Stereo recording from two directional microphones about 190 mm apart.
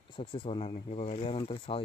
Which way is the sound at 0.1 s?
25° left (ahead or behind).